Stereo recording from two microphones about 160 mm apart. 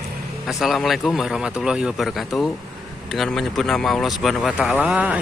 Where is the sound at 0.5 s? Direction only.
Centre (ahead or behind).